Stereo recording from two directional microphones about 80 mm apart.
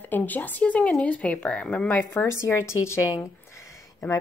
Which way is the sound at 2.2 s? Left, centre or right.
Left.